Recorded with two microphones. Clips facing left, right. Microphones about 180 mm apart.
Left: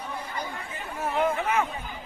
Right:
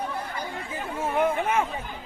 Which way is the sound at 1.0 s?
25° right (ahead or behind).